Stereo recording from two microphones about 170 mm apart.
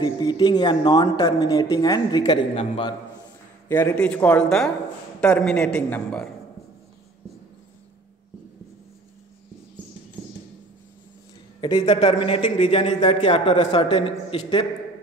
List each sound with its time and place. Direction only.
0.0 s a woman's voice: 25° left (ahead or behind)
3.6 s a man's voice: 15° left (ahead or behind)
11.8 s a man's voice: 35° left (ahead or behind)